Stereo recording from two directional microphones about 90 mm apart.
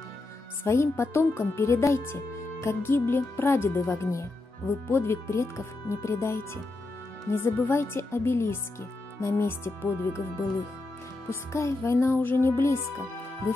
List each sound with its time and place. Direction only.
0.7 s speech: 30° left (ahead or behind)
11.2 s speech: 30° left (ahead or behind)